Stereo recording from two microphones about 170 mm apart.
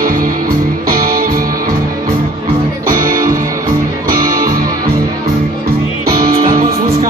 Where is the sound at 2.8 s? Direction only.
55° right (ahead or behind).